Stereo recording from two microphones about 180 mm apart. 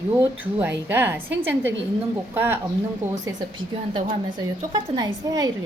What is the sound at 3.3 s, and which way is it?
A woman's voice, 25° right (ahead or behind).